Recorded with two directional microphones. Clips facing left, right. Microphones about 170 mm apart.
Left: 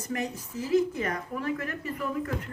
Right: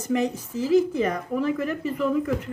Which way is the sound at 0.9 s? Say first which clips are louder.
Right 7 dB; 90° right.